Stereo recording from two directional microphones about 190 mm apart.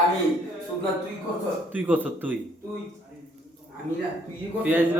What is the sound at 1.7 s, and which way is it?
Speech, 10° right (ahead or behind).